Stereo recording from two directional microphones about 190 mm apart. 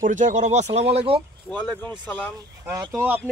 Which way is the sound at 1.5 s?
10° left (ahead or behind).